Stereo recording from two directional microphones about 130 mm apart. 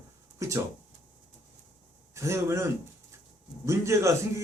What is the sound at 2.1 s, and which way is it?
A man's voice, 20° right (ahead or behind).